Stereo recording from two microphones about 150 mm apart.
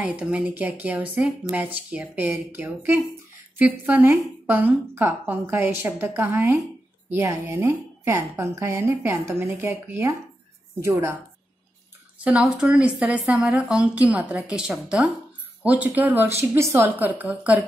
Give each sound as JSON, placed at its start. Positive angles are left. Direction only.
{"t": 0.0, "sound": "a woman's voice", "side_deg": -10}
{"t": 12.2, "sound": "a woman's voice", "side_deg": -10}